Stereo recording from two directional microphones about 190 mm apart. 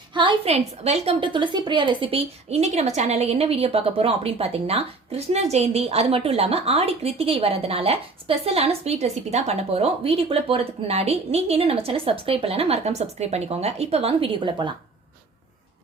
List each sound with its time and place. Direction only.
0.1 s a woman's voice: 25° right (ahead or behind)